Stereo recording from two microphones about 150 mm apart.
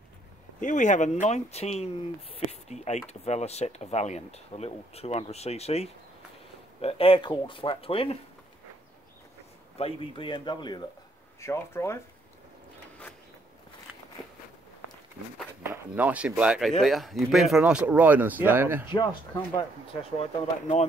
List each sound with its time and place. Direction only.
0.6 s speech: 55° left (ahead or behind); by 8.2 s 40° left (ahead or behind)
9.8 s speech: 40° left (ahead or behind)
11.4 s speech: 15° left (ahead or behind)
13.9 s walk: 10° right (ahead or behind)
15.9 s speech: 10° right (ahead or behind)
20.2 s speech: 45° left (ahead or behind)